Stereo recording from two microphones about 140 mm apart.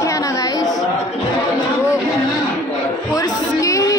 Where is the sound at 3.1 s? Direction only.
25° left (ahead or behind).